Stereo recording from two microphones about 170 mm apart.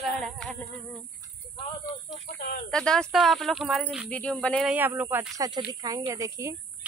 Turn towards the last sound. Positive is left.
turn(degrees=-15)  # may be behind; listen again after turning